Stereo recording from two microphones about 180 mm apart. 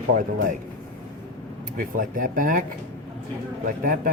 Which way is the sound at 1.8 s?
50° right (ahead or behind).